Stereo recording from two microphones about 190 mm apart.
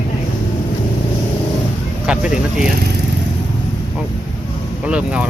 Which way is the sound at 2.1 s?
5° right (ahead or behind).